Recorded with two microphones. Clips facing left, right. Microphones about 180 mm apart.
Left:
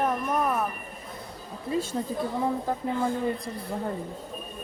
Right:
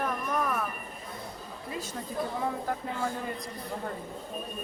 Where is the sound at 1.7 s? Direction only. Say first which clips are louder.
Left 10 dB; 30° left (ahead or behind).